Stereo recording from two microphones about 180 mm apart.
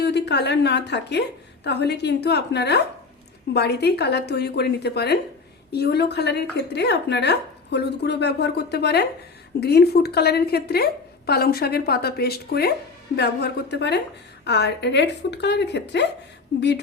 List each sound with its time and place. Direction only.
0.0 s a woman's voice: 65° left (ahead or behind)